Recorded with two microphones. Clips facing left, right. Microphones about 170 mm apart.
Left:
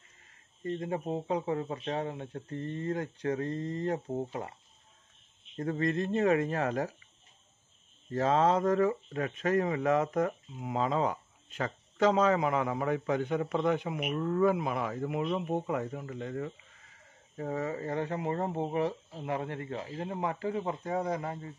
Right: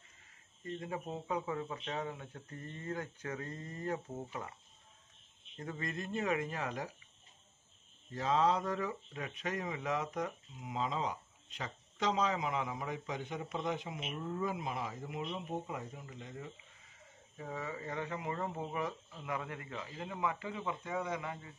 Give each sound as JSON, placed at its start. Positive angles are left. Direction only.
{"t": 0.7, "sound": "speech", "side_deg": 45}
{"t": 5.6, "sound": "speech", "side_deg": 45}
{"t": 8.1, "sound": "speech", "side_deg": 45}
{"t": 17.4, "sound": "speech", "side_deg": 45}